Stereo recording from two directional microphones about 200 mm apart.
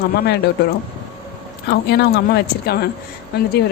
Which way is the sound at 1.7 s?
55° left (ahead or behind).